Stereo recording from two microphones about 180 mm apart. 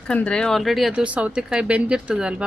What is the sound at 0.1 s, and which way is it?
Speech, 5° left (ahead or behind).